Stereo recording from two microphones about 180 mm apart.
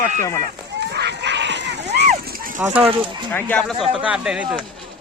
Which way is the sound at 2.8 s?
30° right (ahead or behind).